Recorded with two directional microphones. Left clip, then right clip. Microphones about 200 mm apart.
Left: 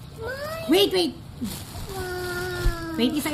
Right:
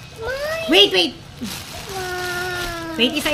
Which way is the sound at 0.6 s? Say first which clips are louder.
Right 6 dB; 10° right (ahead or behind).